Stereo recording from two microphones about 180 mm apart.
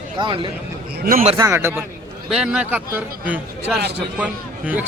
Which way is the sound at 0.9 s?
60° right (ahead or behind).